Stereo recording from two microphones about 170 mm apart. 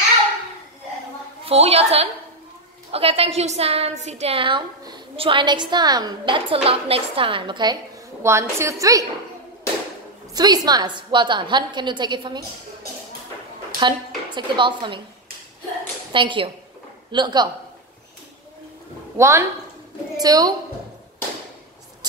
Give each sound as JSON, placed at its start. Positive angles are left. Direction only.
{"t": 1.4, "sound": "a woman's voice", "side_deg": -35}
{"t": 8.2, "sound": "a woman's voice", "side_deg": -15}
{"t": 10.3, "sound": "a woman's voice", "side_deg": -25}
{"t": 13.7, "sound": "a woman's voice", "side_deg": -25}
{"t": 16.1, "sound": "a woman's voice", "side_deg": -30}
{"t": 19.1, "sound": "a woman's voice", "side_deg": -15}